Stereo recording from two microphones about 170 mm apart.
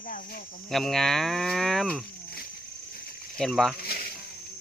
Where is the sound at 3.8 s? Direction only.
65° left (ahead or behind).